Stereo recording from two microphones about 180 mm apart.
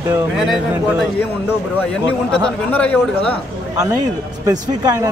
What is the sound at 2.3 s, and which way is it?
Speech, 5° left (ahead or behind).